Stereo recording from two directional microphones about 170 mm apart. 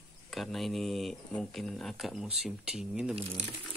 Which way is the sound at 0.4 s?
Centre (ahead or behind).